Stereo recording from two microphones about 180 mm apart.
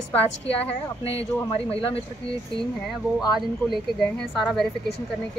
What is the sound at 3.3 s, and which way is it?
Speech, centre (ahead or behind).